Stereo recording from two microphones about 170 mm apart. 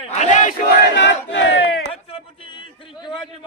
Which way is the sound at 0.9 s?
90° left.